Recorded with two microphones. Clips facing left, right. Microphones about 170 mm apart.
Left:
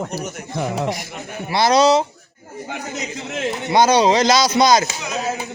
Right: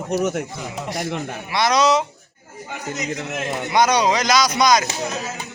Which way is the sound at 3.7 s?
30° left (ahead or behind).